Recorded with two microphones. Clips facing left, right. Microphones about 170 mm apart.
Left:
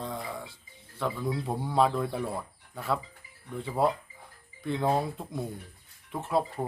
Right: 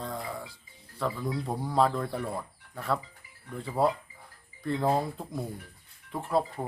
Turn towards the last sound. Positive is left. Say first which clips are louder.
# even
turn(degrees=0)  # may be behind; listen again after turning